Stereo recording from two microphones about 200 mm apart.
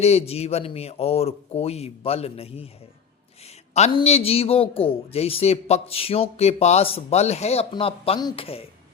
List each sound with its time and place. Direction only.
0.0 s speech: 30° left (ahead or behind)
3.8 s speech: 30° left (ahead or behind)